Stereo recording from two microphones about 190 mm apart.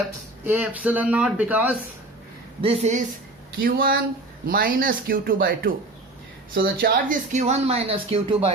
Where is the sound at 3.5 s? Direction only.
50° right (ahead or behind).